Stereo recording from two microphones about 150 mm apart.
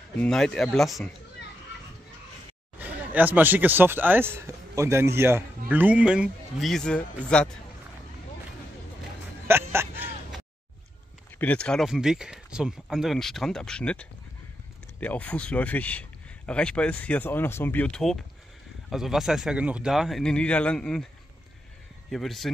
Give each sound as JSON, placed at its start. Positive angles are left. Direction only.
{"t": 0.2, "sound": "speech", "side_deg": 5}
{"t": 2.8, "sound": "speech", "side_deg": -10}
{"t": 9.5, "sound": "a sound", "side_deg": -15}
{"t": 11.3, "sound": "speech", "side_deg": 10}
{"t": 22.1, "sound": "speech", "side_deg": 0}